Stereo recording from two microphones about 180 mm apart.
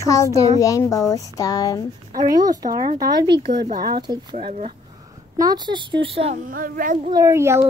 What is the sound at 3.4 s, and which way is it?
Speech, 55° right (ahead or behind).